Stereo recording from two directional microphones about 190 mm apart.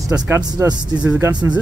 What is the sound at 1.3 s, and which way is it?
Speech, 20° right (ahead or behind).